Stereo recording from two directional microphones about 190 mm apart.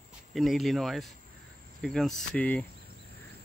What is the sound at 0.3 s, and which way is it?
Speech, centre (ahead or behind).